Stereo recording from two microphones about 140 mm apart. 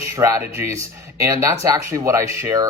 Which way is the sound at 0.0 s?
20° right (ahead or behind).